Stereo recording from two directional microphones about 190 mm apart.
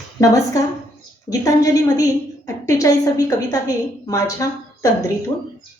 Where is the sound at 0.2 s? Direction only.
15° left (ahead or behind).